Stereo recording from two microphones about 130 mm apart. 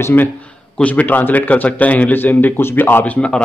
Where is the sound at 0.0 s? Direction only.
15° left (ahead or behind).